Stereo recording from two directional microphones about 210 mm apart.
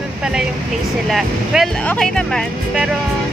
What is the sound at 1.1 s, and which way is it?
Vehicle, centre (ahead or behind).